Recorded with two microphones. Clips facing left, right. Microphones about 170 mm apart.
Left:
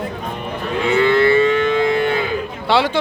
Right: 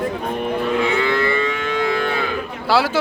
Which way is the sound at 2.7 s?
5° right (ahead or behind).